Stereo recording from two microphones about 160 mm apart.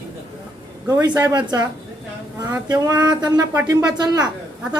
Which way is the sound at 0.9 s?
25° right (ahead or behind).